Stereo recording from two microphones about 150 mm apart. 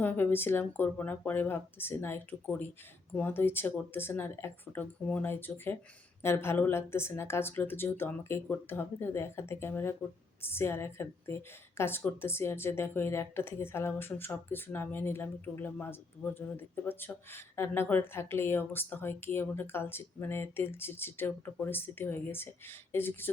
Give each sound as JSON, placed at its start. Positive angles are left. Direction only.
{"t": 0.0, "sound": "speech", "side_deg": 15}